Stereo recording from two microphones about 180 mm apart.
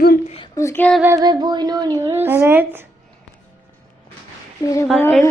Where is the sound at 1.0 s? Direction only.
15° right (ahead or behind).